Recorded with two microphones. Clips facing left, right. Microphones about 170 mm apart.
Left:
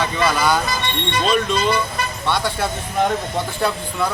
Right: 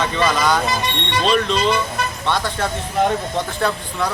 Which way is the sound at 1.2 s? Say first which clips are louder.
Right 1 dB; 5° left (ahead or behind).